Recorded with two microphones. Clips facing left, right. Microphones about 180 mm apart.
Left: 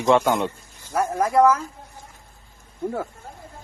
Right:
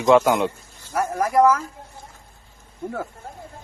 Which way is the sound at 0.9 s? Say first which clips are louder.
Left 1 dB; 25° left (ahead or behind).